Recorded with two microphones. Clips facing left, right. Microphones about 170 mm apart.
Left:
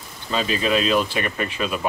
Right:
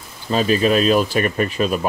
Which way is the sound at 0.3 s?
45° right (ahead or behind).